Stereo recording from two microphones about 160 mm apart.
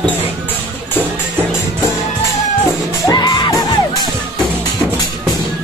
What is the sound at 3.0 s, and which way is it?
Music, 25° left (ahead or behind).